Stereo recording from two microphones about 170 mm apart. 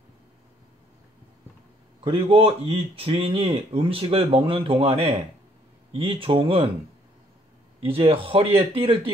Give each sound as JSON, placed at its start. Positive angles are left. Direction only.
{"t": 2.0, "sound": "speech", "side_deg": -35}
{"t": 7.8, "sound": "speech", "side_deg": -35}